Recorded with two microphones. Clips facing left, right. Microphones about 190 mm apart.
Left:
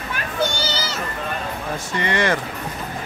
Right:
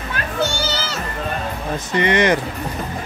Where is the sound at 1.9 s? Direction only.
20° right (ahead or behind).